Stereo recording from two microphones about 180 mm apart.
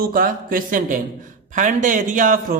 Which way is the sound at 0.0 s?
55° right (ahead or behind).